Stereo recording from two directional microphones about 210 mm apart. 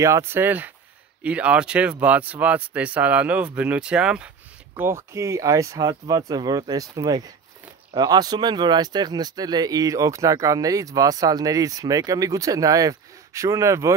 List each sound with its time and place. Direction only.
0.0 s speech: 10° right (ahead or behind)